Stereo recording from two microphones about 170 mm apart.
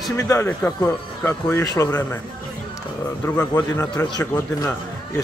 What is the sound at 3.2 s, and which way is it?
Speech, 15° left (ahead or behind).